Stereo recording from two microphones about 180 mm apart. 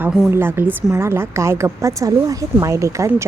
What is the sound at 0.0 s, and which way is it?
A woman's voice, 5° right (ahead or behind).